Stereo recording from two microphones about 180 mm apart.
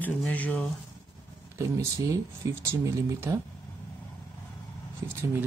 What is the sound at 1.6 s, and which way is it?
Speech, 15° right (ahead or behind).